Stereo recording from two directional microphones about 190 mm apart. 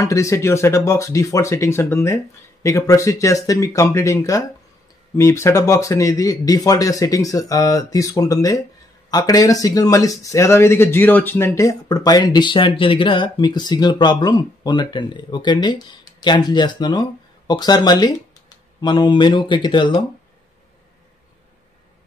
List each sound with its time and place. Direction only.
0.0 s speech: 15° left (ahead or behind)